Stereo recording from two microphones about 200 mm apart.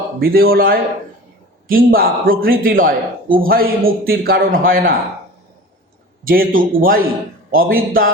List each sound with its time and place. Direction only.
0.2 s speech: 50° right (ahead or behind)
6.2 s speech: 45° right (ahead or behind)